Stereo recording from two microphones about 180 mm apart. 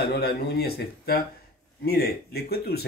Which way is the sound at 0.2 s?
60° left (ahead or behind).